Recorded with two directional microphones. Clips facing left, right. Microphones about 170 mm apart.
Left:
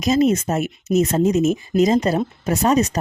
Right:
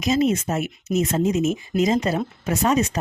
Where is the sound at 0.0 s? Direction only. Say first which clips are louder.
Left 3 dB; 40° left (ahead or behind).